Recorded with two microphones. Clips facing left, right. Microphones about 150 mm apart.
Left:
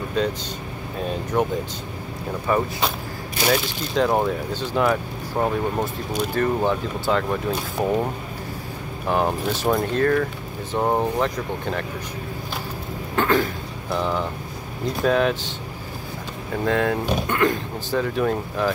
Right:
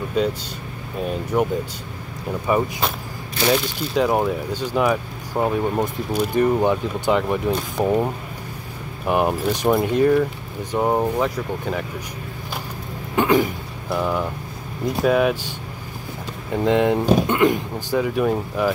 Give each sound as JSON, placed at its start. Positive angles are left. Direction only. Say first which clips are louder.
{"t": 0.2, "sound": "speech", "louder": "right 2 dB", "side_deg": -10}
{"t": 1.3, "sound": "speech", "louder": "right 2 dB", "side_deg": -5}
{"t": 13.1, "sound": "a sound", "louder": "right 3 dB", "side_deg": -15}
{"t": 13.8, "sound": "speech", "louder": "right 2 dB", "side_deg": -10}
{"t": 16.5, "sound": "speech", "louder": "right 4 dB", "side_deg": -20}
{"t": 17.9, "sound": "speech", "louder": "right 2 dB", "side_deg": -10}